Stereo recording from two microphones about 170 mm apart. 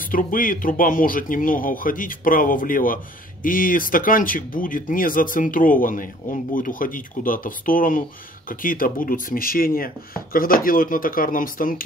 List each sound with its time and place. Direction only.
0.0 s speech: 55° left (ahead or behind)